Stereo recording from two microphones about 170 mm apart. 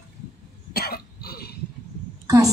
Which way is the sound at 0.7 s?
65° left (ahead or behind).